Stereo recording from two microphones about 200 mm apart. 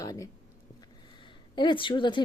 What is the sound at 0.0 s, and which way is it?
A woman's voice, 15° left (ahead or behind).